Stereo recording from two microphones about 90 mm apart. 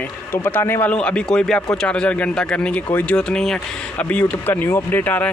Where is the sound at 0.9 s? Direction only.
10° left (ahead or behind).